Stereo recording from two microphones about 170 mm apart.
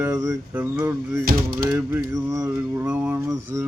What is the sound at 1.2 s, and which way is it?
Speech, 60° right (ahead or behind).